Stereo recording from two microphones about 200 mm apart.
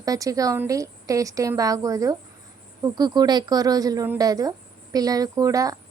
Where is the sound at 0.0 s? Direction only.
15° right (ahead or behind).